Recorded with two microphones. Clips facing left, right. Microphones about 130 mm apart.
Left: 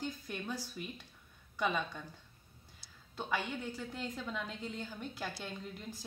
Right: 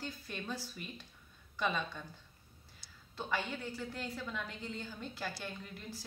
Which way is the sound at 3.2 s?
15° left (ahead or behind).